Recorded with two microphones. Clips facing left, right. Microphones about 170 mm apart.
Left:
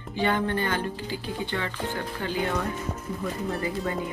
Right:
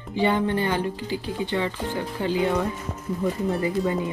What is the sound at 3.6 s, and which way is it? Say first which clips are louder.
Speech: right 5 dB; 20° right (ahead or behind).